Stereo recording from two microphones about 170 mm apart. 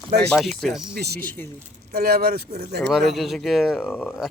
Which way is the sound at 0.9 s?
70° right (ahead or behind).